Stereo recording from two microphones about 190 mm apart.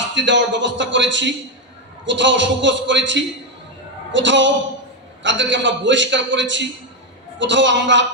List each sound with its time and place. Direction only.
0.0 s a man's voice: 70° right (ahead or behind)